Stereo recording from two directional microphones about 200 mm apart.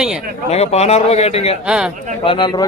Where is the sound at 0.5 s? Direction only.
30° left (ahead or behind).